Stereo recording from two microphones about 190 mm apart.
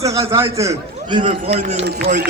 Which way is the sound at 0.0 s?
15° right (ahead or behind).